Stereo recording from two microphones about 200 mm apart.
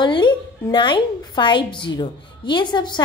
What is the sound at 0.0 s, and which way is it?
A woman's voice, 25° left (ahead or behind).